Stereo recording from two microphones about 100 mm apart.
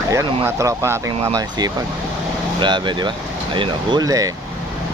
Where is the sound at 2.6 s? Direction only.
50° right (ahead or behind).